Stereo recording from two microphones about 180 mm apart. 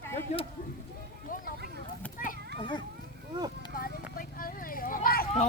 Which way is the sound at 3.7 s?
55° left (ahead or behind).